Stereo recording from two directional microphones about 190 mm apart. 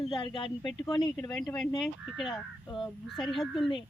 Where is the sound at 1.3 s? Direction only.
5° left (ahead or behind).